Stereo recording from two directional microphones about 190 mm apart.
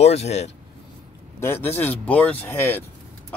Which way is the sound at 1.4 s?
10° left (ahead or behind).